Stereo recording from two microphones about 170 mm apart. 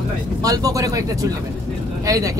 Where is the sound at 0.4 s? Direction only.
20° right (ahead or behind).